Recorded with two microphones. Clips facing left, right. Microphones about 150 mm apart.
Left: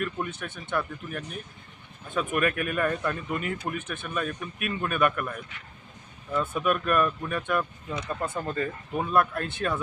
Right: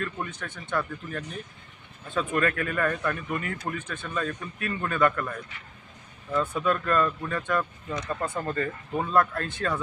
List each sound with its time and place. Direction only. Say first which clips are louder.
0.0 s speech: left 2 dB; 20° left (ahead or behind)
0.8 s speech: right 1 dB; 10° left (ahead or behind)
6.5 s speech: left 2 dB; 15° left (ahead or behind)